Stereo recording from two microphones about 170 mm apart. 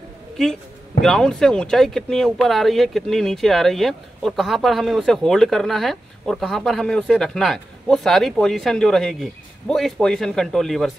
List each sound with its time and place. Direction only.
1.0 s speech: 5° left (ahead or behind)